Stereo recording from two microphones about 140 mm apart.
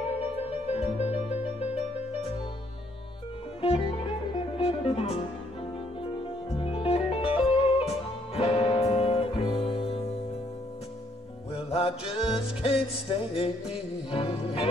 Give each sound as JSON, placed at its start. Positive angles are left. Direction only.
{"t": 0.7, "sound": "music", "side_deg": 50}
{"t": 3.6, "sound": "music", "side_deg": 45}
{"t": 6.5, "sound": "music", "side_deg": 45}
{"t": 11.5, "sound": "music", "side_deg": 45}